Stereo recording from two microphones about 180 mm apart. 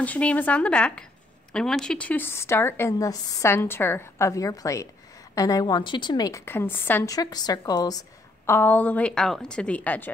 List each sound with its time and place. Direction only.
0.0 s a woman's voice: 10° left (ahead or behind)
8.5 s a woman's voice: 10° left (ahead or behind)